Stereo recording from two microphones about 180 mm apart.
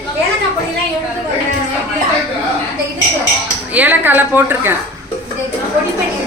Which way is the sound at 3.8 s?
10° right (ahead or behind).